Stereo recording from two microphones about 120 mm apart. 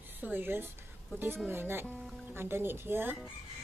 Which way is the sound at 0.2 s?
15° right (ahead or behind).